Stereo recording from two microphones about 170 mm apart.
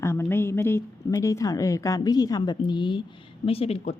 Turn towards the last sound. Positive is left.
turn(degrees=35)  # may be behind; listen again after turning